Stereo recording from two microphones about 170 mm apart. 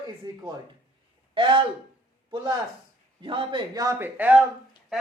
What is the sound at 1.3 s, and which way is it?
Speech, 30° right (ahead or behind).